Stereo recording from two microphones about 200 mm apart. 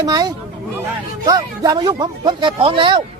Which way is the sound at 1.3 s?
20° right (ahead or behind).